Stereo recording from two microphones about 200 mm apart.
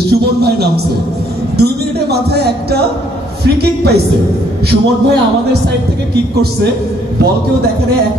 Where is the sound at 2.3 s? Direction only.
55° right (ahead or behind).